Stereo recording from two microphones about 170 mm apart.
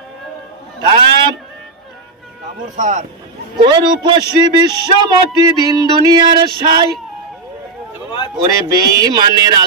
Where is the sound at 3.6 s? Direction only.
30° right (ahead or behind).